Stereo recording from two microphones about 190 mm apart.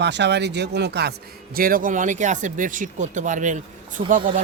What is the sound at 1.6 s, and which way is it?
Speech, 50° right (ahead or behind).